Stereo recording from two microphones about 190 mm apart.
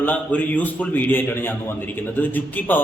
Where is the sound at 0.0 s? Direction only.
10° left (ahead or behind).